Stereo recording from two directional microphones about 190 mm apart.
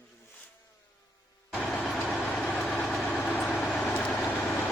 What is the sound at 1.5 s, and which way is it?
Vehicle, 5° left (ahead or behind).